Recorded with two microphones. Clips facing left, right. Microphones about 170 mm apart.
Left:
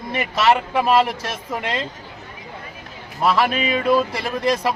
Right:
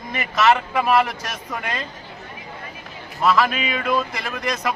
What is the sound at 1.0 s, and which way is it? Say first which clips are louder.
Speech: left 2 dB; 30° left (ahead or behind).